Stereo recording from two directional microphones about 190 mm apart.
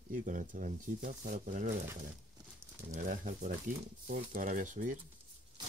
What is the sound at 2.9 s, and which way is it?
Speech, 45° right (ahead or behind).